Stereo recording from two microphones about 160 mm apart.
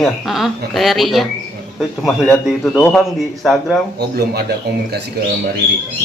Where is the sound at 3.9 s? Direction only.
80° right.